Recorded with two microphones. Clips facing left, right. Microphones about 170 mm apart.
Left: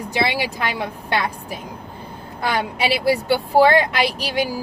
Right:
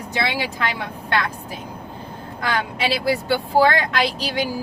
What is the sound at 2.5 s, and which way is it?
Speech, 15° left (ahead or behind).